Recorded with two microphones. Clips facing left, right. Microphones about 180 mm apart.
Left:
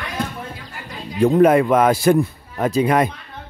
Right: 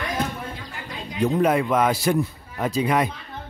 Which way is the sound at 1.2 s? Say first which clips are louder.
Left 7 dB; 55° left (ahead or behind).